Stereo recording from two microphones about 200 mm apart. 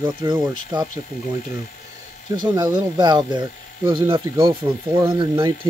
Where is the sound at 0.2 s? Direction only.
25° right (ahead or behind).